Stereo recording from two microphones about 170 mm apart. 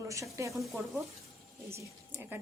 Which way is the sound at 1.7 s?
15° right (ahead or behind).